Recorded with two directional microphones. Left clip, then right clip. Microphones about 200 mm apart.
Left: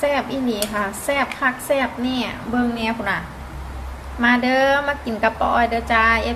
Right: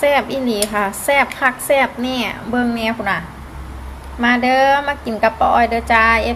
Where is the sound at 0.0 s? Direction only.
40° right (ahead or behind).